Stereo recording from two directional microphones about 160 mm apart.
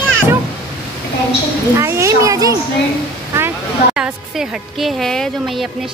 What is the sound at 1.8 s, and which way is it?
Speech, 15° right (ahead or behind).